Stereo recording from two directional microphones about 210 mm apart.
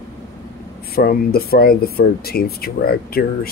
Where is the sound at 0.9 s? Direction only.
45° left (ahead or behind).